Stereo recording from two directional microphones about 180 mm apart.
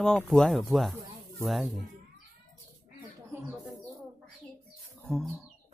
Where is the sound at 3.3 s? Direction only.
15° right (ahead or behind).